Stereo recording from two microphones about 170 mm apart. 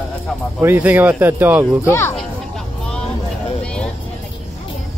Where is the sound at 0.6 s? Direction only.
10° right (ahead or behind).